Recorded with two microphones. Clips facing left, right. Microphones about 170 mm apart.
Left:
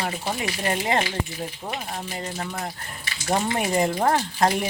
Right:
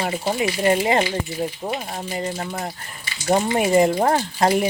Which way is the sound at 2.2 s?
15° right (ahead or behind).